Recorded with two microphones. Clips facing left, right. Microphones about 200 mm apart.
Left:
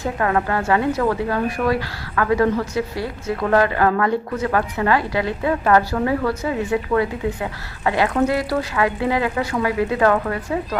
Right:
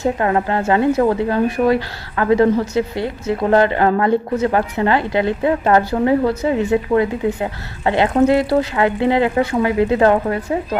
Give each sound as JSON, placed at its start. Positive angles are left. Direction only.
{"t": 0.0, "sound": "a woman's voice", "side_deg": -25}